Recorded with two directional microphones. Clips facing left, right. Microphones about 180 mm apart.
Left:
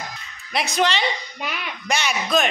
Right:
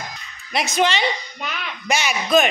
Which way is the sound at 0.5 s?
Centre (ahead or behind).